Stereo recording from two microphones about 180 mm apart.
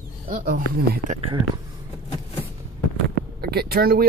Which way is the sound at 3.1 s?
60° right (ahead or behind).